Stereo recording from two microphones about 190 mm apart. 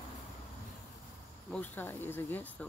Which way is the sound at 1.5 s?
10° left (ahead or behind).